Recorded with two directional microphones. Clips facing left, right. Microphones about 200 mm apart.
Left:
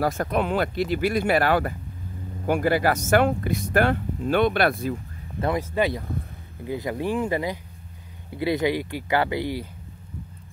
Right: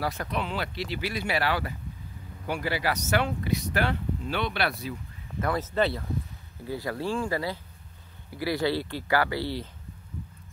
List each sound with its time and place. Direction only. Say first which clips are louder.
0.0 s speech: left 7 dB; 45° left (ahead or behind)
5.6 s speech: left 2 dB; 10° left (ahead or behind)